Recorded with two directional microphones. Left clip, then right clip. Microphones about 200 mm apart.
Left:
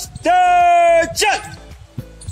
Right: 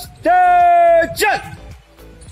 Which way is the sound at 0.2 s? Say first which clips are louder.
Right 1 dB; 35° right (ahead or behind).